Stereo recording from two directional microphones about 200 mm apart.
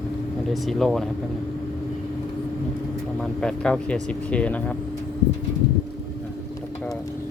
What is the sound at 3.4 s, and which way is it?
Speech, centre (ahead or behind).